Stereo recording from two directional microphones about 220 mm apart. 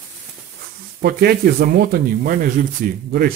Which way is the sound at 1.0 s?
45° right (ahead or behind).